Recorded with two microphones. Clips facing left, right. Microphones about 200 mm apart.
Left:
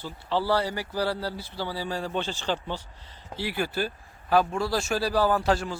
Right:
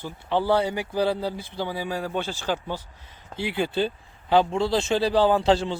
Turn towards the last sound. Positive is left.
turn(degrees=-25)  # may be behind; listen again after turning